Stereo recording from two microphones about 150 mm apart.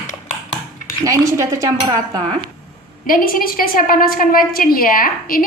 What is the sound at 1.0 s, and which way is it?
Speech, 20° right (ahead or behind).